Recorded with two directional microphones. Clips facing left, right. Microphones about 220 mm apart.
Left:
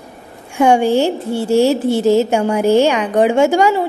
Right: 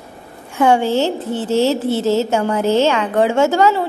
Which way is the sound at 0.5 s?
15° left (ahead or behind).